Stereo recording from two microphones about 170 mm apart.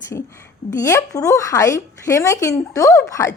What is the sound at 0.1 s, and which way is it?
A woman's voice, 15° left (ahead or behind).